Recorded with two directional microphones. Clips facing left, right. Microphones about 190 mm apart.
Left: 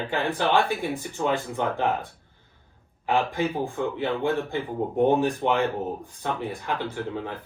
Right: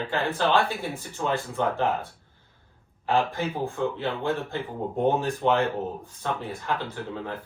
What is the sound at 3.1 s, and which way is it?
Speech, 15° left (ahead or behind).